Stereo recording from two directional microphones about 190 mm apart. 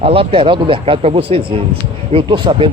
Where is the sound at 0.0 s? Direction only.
30° right (ahead or behind).